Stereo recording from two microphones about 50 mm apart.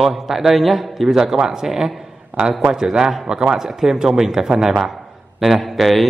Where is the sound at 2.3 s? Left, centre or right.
Right.